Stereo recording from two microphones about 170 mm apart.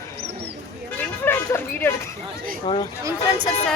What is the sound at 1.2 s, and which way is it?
Speech, 10° left (ahead or behind).